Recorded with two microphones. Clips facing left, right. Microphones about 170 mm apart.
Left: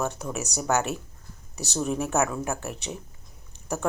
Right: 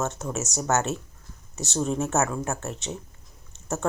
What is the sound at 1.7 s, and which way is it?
A woman's voice, 20° right (ahead or behind).